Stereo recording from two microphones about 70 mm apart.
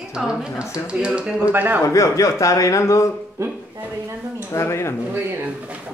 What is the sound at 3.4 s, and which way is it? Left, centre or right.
Speech, right.